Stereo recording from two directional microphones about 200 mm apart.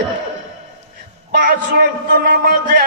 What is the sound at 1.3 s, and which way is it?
A man's voice, 50° right (ahead or behind).